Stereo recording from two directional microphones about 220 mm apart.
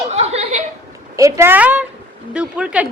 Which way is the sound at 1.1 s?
15° right (ahead or behind).